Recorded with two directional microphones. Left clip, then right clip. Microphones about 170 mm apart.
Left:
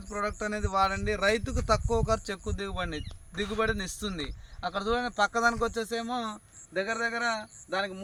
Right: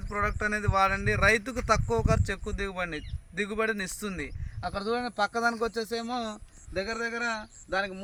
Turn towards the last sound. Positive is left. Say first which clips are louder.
# right 1 dB
turn(degrees=-65)  # may be behind; listen again after turning